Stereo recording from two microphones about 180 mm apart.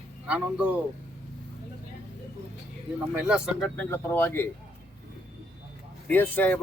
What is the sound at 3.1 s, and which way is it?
Speech, 5° right (ahead or behind).